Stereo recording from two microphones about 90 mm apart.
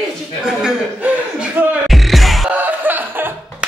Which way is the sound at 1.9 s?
Centre (ahead or behind).